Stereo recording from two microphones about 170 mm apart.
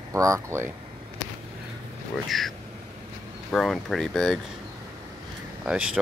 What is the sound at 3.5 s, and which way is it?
Speech, centre (ahead or behind).